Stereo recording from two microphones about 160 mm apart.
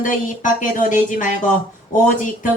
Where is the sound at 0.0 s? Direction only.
55° left (ahead or behind).